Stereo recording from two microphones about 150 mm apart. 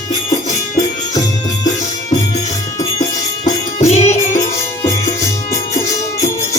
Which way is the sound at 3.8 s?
45° left (ahead or behind).